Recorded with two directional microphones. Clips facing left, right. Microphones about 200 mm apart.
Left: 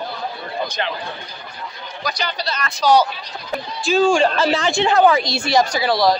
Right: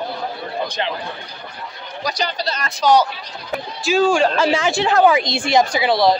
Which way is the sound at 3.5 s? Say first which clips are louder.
Even; 5° right (ahead or behind).